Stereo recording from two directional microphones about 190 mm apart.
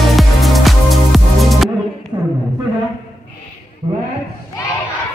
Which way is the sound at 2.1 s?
20° right (ahead or behind).